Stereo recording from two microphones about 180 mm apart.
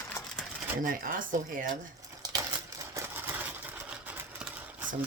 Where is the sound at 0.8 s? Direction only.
50° right (ahead or behind).